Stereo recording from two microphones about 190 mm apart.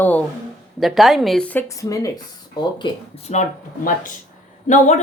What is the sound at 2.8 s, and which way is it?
Speech, 35° left (ahead or behind).